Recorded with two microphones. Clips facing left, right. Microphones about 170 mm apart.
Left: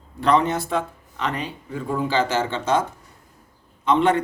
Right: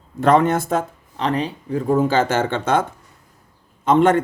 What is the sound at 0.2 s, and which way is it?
Speech, 50° right (ahead or behind).